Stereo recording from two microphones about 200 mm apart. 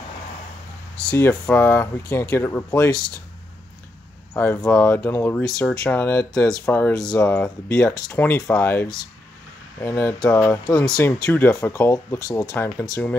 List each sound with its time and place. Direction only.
0.9 s speech: 10° left (ahead or behind)
4.3 s speech: 10° left (ahead or behind)